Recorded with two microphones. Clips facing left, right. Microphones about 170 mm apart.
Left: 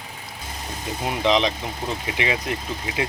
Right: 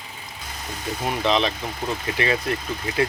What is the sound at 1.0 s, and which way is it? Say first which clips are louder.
Speech: left 1 dB; 15° left (ahead or behind).